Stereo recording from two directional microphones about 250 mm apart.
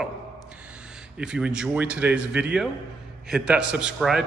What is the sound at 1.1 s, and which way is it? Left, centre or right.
A man's voice, centre.